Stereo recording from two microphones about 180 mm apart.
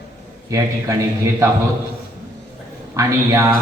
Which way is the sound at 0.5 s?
15° right (ahead or behind).